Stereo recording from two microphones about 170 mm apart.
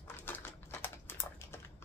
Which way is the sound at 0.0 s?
10° left (ahead or behind).